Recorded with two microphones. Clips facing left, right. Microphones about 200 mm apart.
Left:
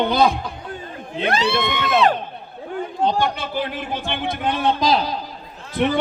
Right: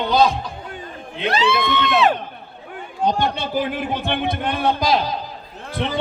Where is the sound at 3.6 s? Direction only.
55° right (ahead or behind).